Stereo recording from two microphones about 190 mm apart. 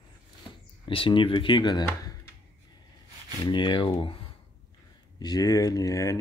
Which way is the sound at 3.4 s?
25° left (ahead or behind).